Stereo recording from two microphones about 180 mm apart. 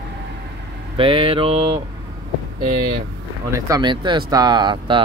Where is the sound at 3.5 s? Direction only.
20° right (ahead or behind).